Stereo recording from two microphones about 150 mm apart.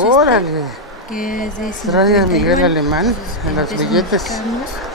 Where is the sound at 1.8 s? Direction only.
Centre (ahead or behind).